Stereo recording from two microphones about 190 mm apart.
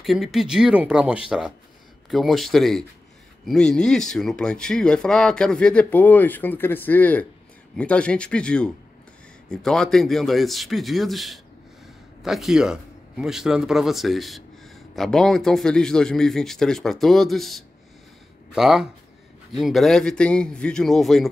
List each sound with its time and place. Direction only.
0.0 s a man's voice: centre (ahead or behind)